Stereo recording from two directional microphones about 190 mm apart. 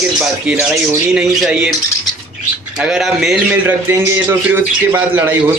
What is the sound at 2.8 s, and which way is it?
A man's voice, 5° right (ahead or behind).